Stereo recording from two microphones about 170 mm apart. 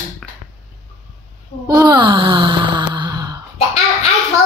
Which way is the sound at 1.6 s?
25° right (ahead or behind).